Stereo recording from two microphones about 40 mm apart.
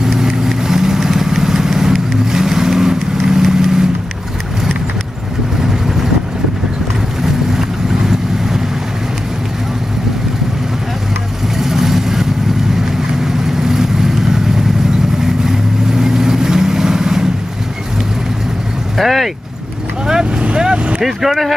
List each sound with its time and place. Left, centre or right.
0.0 s vehicle: centre
7.2 s vehicle: centre
11.5 s vehicle: centre
15.4 s vehicle: centre
18.9 s vehicle: centre
20.1 s vehicle: centre
20.4 s vehicle: right
21.0 s speech: centre